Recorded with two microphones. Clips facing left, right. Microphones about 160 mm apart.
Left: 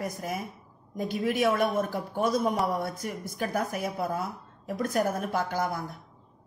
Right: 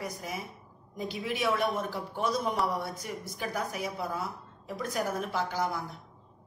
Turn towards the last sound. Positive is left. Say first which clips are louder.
# left 2 dB
turn(degrees=50)  # may be behind; listen again after turning